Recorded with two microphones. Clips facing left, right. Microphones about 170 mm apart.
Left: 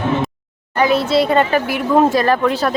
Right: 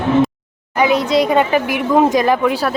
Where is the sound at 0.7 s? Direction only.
15° right (ahead or behind).